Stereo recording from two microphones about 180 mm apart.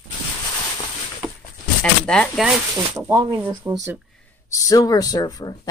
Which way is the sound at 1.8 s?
5° left (ahead or behind).